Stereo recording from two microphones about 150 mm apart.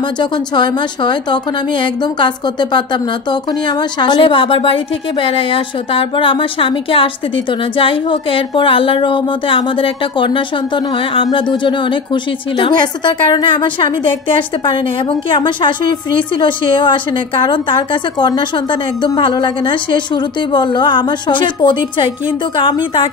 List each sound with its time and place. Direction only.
0.2 s a woman's voice: 30° left (ahead or behind)